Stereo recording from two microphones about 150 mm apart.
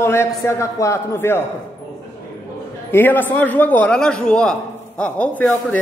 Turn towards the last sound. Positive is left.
turn(degrees=10)  # may be behind; listen again after turning